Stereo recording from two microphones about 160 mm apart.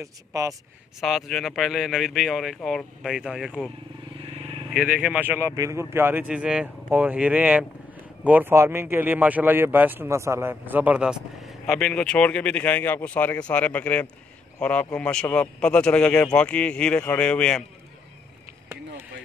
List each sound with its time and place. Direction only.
0.0 s speech: 20° right (ahead or behind)
1.0 s speech: centre (ahead or behind)
4.7 s speech: 5° right (ahead or behind)